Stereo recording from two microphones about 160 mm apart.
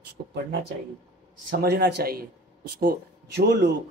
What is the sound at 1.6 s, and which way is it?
Speech, 85° right.